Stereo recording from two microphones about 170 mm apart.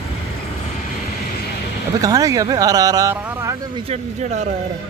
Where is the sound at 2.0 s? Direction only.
20° right (ahead or behind).